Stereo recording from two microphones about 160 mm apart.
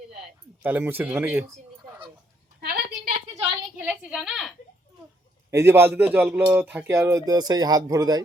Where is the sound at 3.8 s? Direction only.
10° right (ahead or behind).